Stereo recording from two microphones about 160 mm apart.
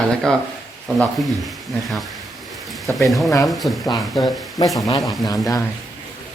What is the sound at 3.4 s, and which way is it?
Speech, centre (ahead or behind).